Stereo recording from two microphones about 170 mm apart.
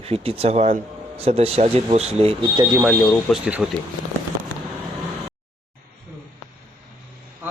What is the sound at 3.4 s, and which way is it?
Speech, 5° right (ahead or behind).